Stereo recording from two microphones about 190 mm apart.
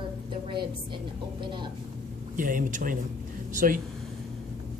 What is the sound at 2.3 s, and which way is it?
Speech, 45° right (ahead or behind).